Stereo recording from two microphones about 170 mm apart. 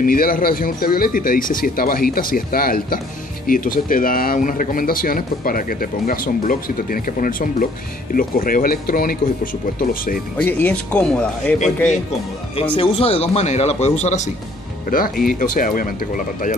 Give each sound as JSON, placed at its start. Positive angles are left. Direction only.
{"t": 0.0, "sound": "speech", "side_deg": 55}
{"t": 10.3, "sound": "speech", "side_deg": 10}
{"t": 12.7, "sound": "speech", "side_deg": 30}
{"t": 14.9, "sound": "speech", "side_deg": 55}